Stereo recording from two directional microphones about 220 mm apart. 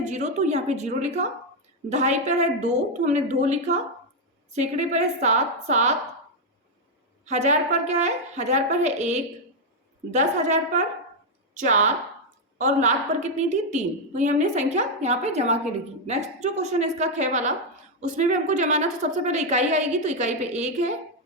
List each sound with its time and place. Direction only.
0.0 s a woman's voice: 30° right (ahead or behind)
7.3 s a woman's voice: 30° right (ahead or behind)